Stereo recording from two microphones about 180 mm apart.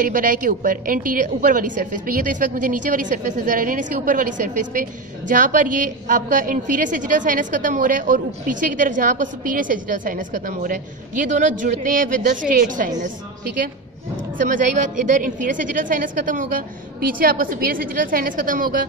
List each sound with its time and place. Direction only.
0.0 s a woman's voice: 50° right (ahead or behind)
14.5 s a woman's voice: 45° right (ahead or behind)